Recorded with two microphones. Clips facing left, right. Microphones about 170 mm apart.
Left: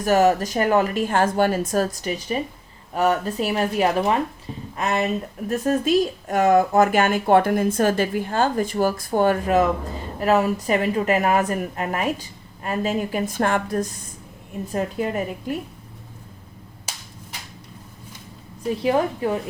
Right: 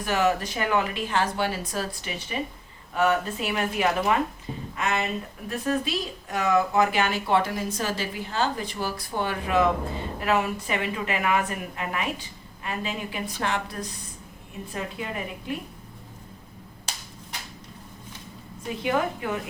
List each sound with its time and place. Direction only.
0.0 s a woman's voice: 40° left (ahead or behind)
18.7 s speech: 35° left (ahead or behind)